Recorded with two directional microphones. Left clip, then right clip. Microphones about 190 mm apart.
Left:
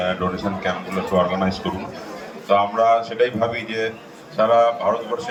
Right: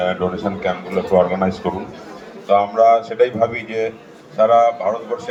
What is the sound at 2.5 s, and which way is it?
A man's voice, 30° right (ahead or behind).